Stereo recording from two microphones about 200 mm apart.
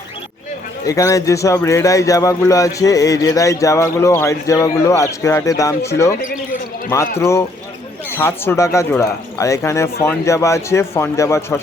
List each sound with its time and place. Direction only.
0.9 s speech: 15° left (ahead or behind)
7.2 s speech: 15° left (ahead or behind)